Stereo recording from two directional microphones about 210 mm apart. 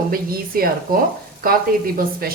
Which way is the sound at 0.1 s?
45° right (ahead or behind).